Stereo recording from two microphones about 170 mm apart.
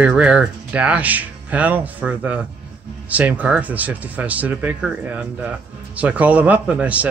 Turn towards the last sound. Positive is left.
turn(degrees=-10)  # may be behind; listen again after turning